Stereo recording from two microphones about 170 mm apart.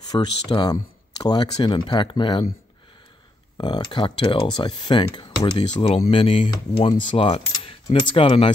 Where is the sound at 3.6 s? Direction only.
25° left (ahead or behind).